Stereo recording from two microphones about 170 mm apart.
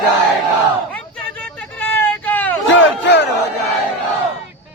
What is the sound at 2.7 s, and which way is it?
Battle cry, 90° left.